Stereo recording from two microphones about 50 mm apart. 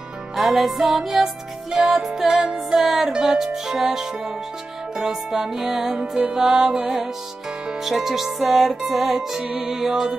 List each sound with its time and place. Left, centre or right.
0.4 s music: centre